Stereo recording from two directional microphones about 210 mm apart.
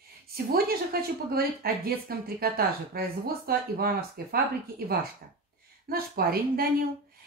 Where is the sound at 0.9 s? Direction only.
45° right (ahead or behind).